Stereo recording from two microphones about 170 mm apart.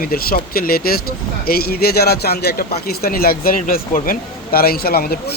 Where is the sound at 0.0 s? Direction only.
60° left (ahead or behind).